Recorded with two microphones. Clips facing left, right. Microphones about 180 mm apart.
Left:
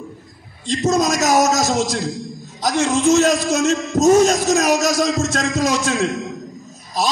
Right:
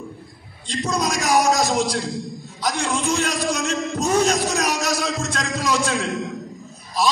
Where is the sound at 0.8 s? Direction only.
45° left (ahead or behind).